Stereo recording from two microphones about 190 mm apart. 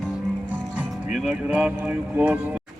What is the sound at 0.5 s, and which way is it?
Speech, 5° right (ahead or behind).